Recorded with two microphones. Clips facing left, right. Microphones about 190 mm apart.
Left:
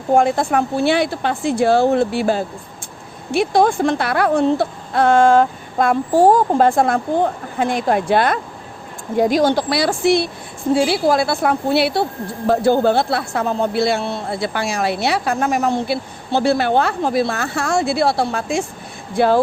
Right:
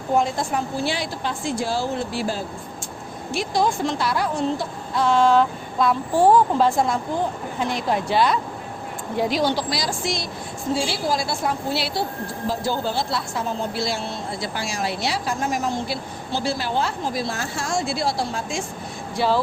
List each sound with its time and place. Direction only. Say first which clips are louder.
0.2 s speech: left 7 dB; 60° left (ahead or behind)